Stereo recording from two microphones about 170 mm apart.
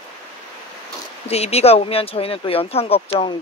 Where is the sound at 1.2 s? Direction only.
35° left (ahead or behind).